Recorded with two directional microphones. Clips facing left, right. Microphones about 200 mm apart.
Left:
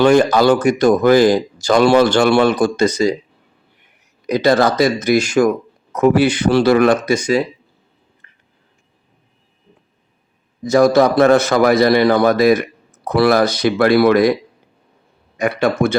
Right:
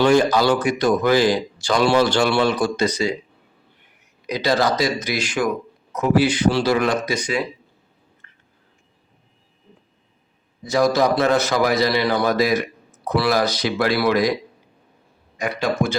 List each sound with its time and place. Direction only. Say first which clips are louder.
0.0 s speech: left 4 dB; 55° left (ahead or behind)
4.3 s speech: left 6 dB; 50° left (ahead or behind)
5.9 s speech: left 5 dB; 55° left (ahead or behind)
8.2 s a sound: even; 15° left (ahead or behind)
10.6 s speech: left 6 dB; 50° left (ahead or behind)
15.4 s speech: left 5 dB; 60° left (ahead or behind)